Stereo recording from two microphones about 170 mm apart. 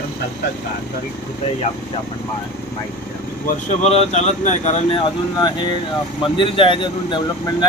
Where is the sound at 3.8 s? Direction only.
40° left (ahead or behind).